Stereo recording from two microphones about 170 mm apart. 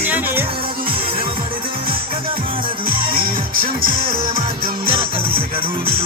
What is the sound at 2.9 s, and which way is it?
Music, 60° right (ahead or behind).